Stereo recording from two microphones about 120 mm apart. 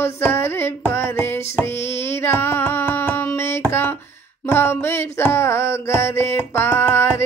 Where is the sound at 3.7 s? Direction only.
20° left (ahead or behind).